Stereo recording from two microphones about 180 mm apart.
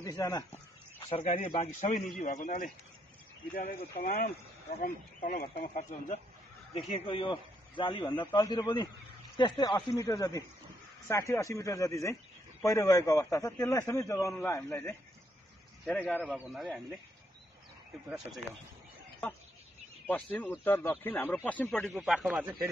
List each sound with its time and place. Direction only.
0.0 s a man's voice: 20° left (ahead or behind)
0.9 s a man's voice: 35° left (ahead or behind)
4.0 s speech: 55° left (ahead or behind)
5.8 s a man's voice: 40° left (ahead or behind); by 17.0 s centre (ahead or behind)
20.1 s a man's voice: 10° left (ahead or behind)
21.9 s a man's voice: 5° right (ahead or behind)